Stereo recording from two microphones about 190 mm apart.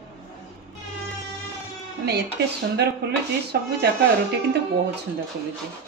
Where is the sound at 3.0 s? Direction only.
60° right (ahead or behind).